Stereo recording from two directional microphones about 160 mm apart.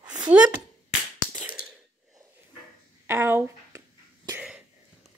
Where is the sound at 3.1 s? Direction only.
15° right (ahead or behind).